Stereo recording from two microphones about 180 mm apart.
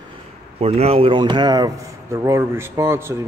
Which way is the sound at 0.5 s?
35° right (ahead or behind).